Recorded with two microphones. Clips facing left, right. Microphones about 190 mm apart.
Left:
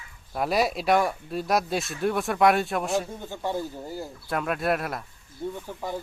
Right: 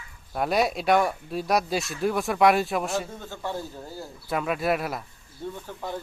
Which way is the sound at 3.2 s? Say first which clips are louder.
Left 3 dB; 15° left (ahead or behind).